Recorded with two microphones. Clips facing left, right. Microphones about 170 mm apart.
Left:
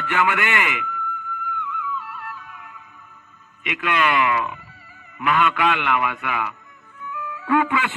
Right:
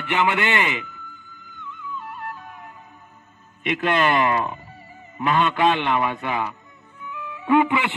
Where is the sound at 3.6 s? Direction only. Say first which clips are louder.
Right 2 dB; 35° right (ahead or behind).